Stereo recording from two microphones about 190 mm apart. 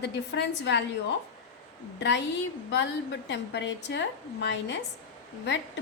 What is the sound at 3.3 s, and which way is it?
Speech, 65° left (ahead or behind).